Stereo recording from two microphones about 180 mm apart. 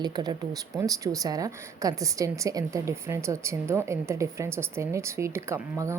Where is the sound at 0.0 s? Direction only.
25° right (ahead or behind).